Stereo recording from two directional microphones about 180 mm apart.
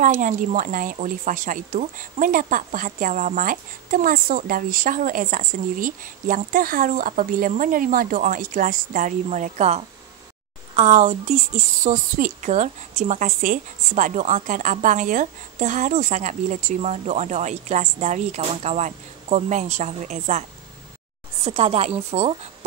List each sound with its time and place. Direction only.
0.0 s a woman's voice: 45° right (ahead or behind)
21.5 s a woman's voice: 35° right (ahead or behind)